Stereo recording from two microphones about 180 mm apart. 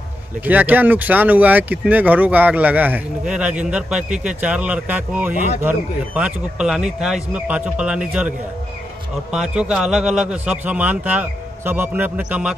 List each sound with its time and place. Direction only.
0.5 s a man's voice: 10° right (ahead or behind)